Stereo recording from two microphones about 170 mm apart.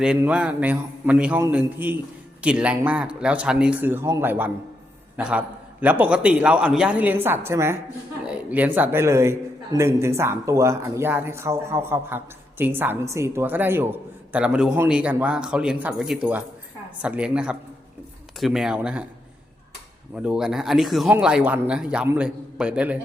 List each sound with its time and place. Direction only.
0.0 s a man's voice: 5° right (ahead or behind)
20.1 s speech: 5° right (ahead or behind)